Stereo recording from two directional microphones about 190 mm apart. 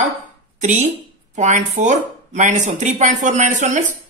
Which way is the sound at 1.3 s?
40° right (ahead or behind).